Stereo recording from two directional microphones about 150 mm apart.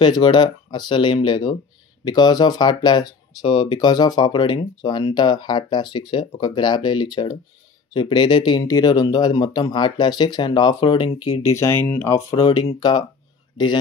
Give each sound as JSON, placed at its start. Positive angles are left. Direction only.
{"t": 0.0, "sound": "speech", "side_deg": 30}
{"t": 11.5, "sound": "speech", "side_deg": 15}
{"t": 12.4, "sound": "speech", "side_deg": 35}